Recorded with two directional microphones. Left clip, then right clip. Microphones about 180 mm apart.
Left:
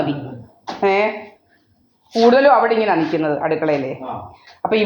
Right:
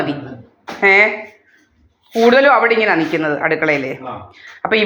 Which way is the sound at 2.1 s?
40° right (ahead or behind).